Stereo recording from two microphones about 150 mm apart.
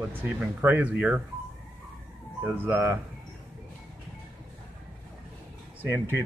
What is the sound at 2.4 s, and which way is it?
Speech, 15° right (ahead or behind).